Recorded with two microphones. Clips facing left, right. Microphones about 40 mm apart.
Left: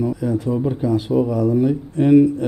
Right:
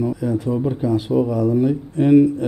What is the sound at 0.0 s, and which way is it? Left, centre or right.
Speech, centre.